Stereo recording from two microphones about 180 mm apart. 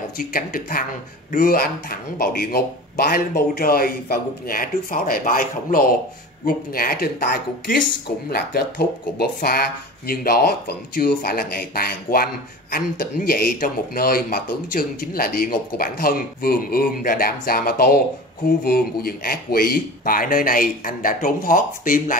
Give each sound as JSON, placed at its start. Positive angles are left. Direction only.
{"t": 0.2, "sound": "speech", "side_deg": 50}
{"t": 13.3, "sound": "speech", "side_deg": 55}